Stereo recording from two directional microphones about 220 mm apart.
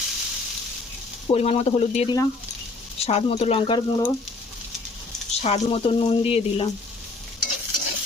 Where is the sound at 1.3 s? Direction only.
30° left (ahead or behind).